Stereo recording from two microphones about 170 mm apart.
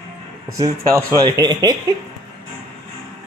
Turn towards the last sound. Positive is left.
turn(degrees=-25)  # may be behind; listen again after turning